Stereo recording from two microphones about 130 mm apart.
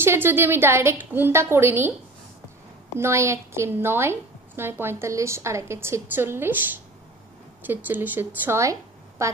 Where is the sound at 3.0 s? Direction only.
20° right (ahead or behind).